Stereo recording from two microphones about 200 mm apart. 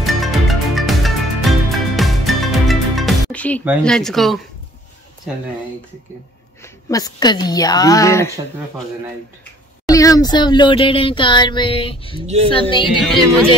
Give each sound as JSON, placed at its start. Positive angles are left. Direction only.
{"t": 0.0, "sound": "music", "side_deg": 0}
{"t": 3.8, "sound": "speech", "side_deg": 0}
{"t": 6.6, "sound": "speech", "side_deg": 15}
{"t": 9.8, "sound": "speech", "side_deg": 15}